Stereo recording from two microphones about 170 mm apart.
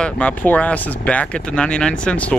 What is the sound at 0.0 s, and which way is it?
Speech, 5° left (ahead or behind).